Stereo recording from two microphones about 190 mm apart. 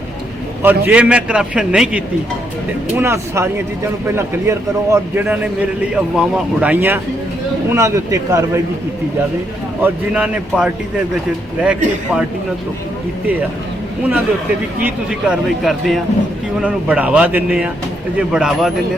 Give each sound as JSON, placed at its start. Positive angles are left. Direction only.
{"t": 0.6, "sound": "a man's voice", "side_deg": -10}
{"t": 9.8, "sound": "a man's voice", "side_deg": -5}
{"t": 14.8, "sound": "a man's voice", "side_deg": -5}